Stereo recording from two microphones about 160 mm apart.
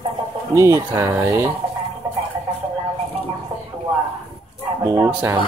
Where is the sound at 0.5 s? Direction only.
20° right (ahead or behind).